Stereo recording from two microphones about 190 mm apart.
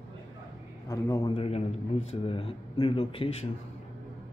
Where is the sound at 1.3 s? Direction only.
30° left (ahead or behind).